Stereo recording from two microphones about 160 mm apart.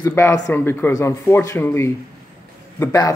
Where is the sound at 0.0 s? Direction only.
15° left (ahead or behind).